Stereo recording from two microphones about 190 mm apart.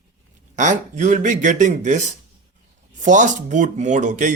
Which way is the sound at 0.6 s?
40° right (ahead or behind).